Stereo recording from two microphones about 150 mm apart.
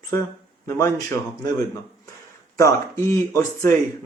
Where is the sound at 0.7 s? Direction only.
20° left (ahead or behind).